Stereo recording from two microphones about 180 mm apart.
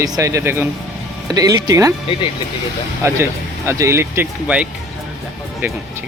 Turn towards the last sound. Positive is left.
turn(degrees=-10)  # may be behind; listen again after turning